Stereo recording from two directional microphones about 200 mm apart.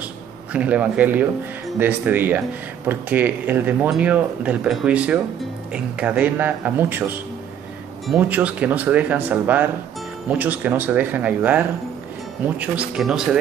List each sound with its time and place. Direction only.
0.5 s speech: 5° right (ahead or behind)